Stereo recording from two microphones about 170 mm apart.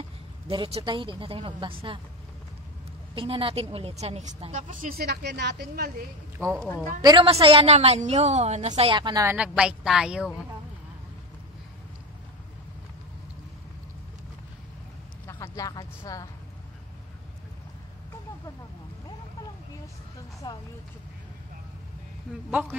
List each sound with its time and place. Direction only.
0.5 s speech: 30° right (ahead or behind)
3.2 s a woman's voice: 30° right (ahead or behind); by 6.0 s 70° right (ahead or behind)
6.3 s a woman's voice: 15° right (ahead or behind)
7.0 s speech: 25° right (ahead or behind)
7.4 s a woman's voice: 35° right (ahead or behind); by 9.4 s 20° right (ahead or behind)
9.6 s speech: 5° right (ahead or behind)
15.2 s speech: 20° left (ahead or behind)
20.4 s speech: 25° left (ahead or behind)
22.5 s a man's voice: 10° right (ahead or behind)